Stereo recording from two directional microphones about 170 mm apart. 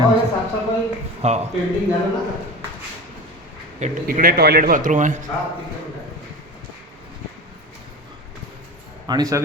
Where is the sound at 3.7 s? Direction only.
45° right (ahead or behind).